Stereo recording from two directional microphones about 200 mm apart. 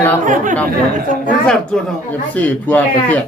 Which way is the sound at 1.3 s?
5° left (ahead or behind).